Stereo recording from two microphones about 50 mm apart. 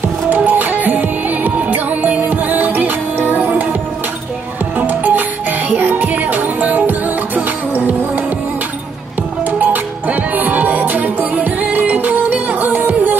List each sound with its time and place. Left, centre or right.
0.3 s music: right
4.7 s music: right
9.6 s music: right